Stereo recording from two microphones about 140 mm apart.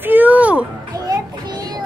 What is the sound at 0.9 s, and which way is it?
Music, 25° right (ahead or behind).